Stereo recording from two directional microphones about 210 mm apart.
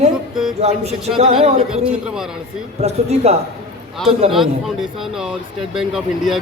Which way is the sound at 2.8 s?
30° right (ahead or behind).